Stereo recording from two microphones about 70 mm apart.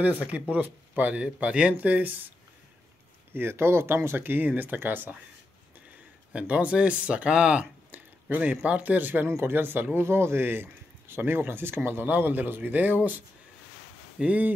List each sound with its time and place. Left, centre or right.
0.0 s speech: centre
3.3 s speech: right
6.3 s speech: centre
14.2 s speech: centre